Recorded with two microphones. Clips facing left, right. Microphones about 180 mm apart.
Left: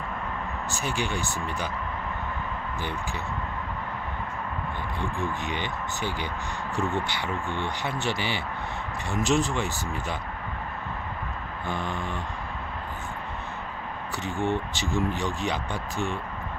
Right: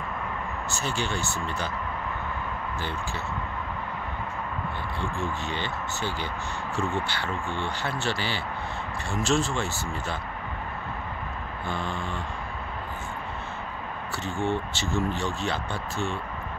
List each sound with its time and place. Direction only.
0.7 s speech: 15° left (ahead or behind)
5.2 s speech: 15° left (ahead or behind)
11.6 s speech: 15° left (ahead or behind)
14.4 s speech: 15° left (ahead or behind)